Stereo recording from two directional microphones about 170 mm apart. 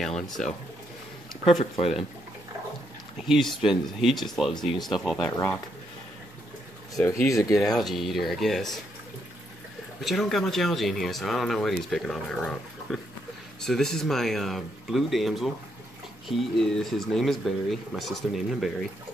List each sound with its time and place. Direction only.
0.4 s speech: 5° left (ahead or behind)
1.5 s speech: 35° left (ahead or behind)
3.2 s speech: centre (ahead or behind)
5.3 s speech: 15° left (ahead or behind)
7.0 s speech: 20° left (ahead or behind)
7.5 s speech: centre (ahead or behind)
9.9 s speech: centre (ahead or behind)